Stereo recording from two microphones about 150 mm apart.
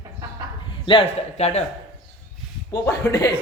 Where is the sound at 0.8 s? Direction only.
35° left (ahead or behind).